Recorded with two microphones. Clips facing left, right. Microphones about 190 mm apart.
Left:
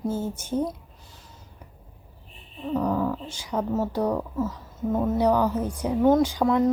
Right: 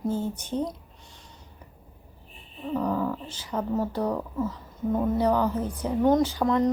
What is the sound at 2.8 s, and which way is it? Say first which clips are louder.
A woman's voice: left 2 dB; 5° left (ahead or behind).